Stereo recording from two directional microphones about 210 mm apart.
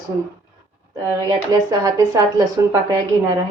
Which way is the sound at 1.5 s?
15° right (ahead or behind).